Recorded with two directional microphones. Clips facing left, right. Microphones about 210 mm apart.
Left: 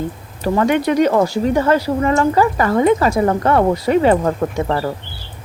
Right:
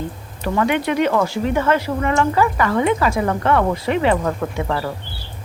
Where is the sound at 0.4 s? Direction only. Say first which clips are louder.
Left 4 dB; 40° left (ahead or behind).